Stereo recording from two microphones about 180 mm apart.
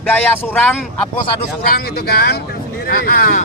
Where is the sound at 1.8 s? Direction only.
60° left (ahead or behind).